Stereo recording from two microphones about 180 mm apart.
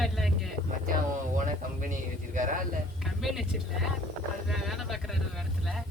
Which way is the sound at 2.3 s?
45° right (ahead or behind).